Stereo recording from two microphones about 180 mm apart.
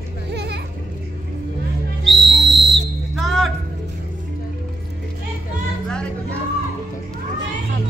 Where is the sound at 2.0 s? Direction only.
Centre (ahead or behind).